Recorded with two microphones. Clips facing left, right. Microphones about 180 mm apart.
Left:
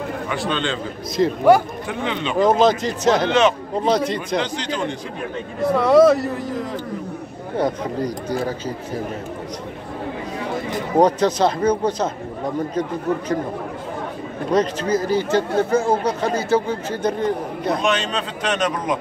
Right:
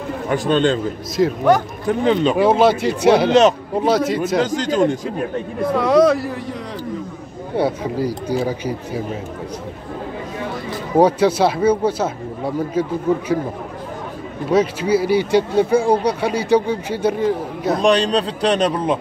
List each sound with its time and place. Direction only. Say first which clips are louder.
0.3 s speech: right 9 dB; 45° right (ahead or behind)
1.1 s speech: even; centre (ahead or behind)
1.9 s a man's voice: right 12 dB; 40° right (ahead or behind)
2.3 s speech: right 2 dB; 10° right (ahead or behind)
3.3 s a man's voice: right 4 dB; 40° right (ahead or behind)
3.8 s speech: right 2 dB; 5° right (ahead or behind)
4.4 s speech: right 7 dB; 45° right (ahead or behind)
5.8 s speech: left 1 dB; centre (ahead or behind)
11.0 s speech: right 2 dB; 10° right (ahead or behind)
14.5 s speech: right 3 dB; 10° right (ahead or behind)
17.8 s a man's voice: right 6 dB; 35° right (ahead or behind)